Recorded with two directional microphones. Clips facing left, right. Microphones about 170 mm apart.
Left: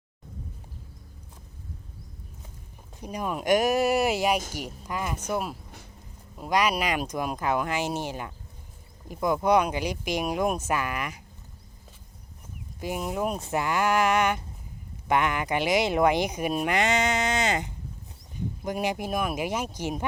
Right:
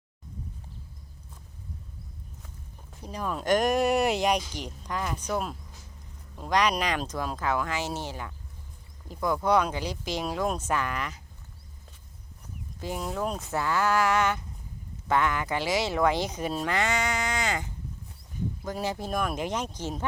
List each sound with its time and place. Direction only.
3.0 s speech: 15° left (ahead or behind)
12.8 s speech: 15° left (ahead or behind)